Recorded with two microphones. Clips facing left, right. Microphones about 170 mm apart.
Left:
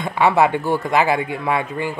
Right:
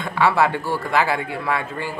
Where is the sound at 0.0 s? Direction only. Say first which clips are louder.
Left 3 dB; 20° left (ahead or behind).